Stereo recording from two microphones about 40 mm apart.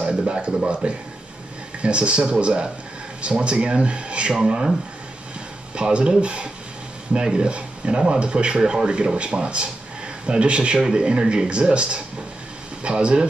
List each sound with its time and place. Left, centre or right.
0.0 s speech: right
1.8 s speech: right
5.8 s speech: right